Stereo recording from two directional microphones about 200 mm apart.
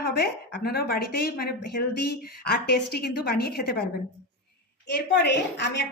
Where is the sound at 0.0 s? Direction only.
50° left (ahead or behind).